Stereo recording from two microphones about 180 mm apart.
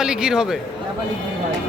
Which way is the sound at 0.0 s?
5° right (ahead or behind).